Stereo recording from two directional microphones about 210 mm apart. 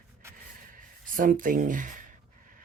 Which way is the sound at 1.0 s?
40° right (ahead or behind).